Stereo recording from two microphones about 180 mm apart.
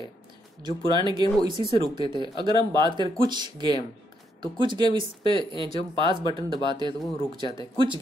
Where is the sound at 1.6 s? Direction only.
35° left (ahead or behind).